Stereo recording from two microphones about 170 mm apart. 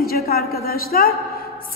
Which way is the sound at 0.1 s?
65° left (ahead or behind).